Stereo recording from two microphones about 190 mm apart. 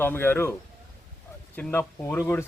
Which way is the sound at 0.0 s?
10° left (ahead or behind).